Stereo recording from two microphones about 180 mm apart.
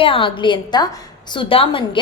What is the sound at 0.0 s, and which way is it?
A woman's voice, 30° left (ahead or behind).